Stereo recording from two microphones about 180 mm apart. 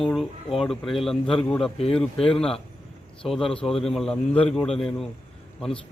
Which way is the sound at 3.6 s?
30° left (ahead or behind).